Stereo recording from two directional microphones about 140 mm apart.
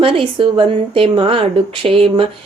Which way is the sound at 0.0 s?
40° right (ahead or behind).